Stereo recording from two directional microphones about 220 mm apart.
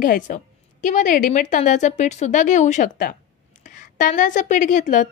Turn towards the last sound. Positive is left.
turn(degrees=35)  # may be behind; listen again after turning